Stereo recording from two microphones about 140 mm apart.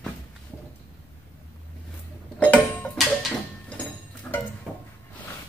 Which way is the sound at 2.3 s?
10° left (ahead or behind).